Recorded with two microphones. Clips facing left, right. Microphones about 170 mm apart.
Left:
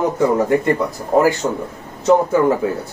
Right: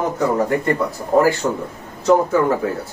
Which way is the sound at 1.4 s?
30° left (ahead or behind).